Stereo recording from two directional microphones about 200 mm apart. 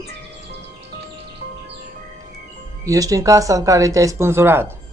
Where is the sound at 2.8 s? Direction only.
15° right (ahead or behind).